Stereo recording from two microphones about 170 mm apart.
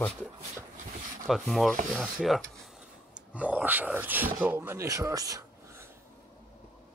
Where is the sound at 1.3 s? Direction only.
Centre (ahead or behind).